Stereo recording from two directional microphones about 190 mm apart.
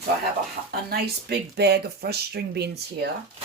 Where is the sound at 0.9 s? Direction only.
60° right (ahead or behind).